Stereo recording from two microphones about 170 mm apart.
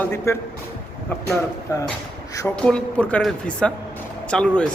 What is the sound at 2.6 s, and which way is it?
Speech, 5° left (ahead or behind).